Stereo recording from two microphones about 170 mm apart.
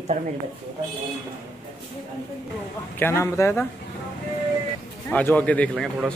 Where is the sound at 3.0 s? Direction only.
15° left (ahead or behind).